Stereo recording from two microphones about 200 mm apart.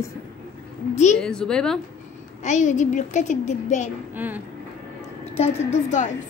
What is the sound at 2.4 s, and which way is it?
A child's voice, 35° left (ahead or behind).